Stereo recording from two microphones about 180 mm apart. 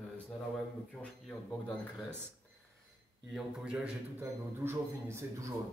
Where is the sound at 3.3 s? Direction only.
5° right (ahead or behind).